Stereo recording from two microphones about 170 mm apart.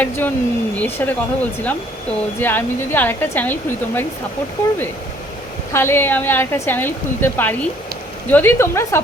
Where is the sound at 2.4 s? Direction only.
10° left (ahead or behind).